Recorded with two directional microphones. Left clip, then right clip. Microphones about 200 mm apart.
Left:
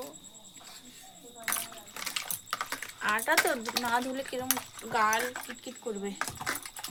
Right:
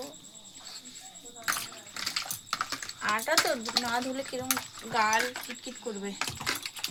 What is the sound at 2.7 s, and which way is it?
A child's voice, 15° left (ahead or behind).